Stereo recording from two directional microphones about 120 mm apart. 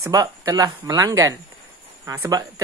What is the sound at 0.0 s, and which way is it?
Speech, 30° right (ahead or behind).